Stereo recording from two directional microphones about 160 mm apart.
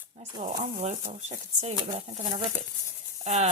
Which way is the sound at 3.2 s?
40° right (ahead or behind).